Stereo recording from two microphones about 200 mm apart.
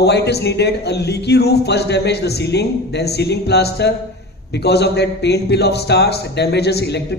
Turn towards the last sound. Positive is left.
turn(degrees=55)  # may be behind; listen again after turning